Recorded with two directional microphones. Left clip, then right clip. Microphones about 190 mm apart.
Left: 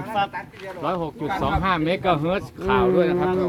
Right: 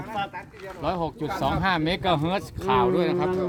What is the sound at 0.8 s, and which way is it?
Speech, 65° right (ahead or behind).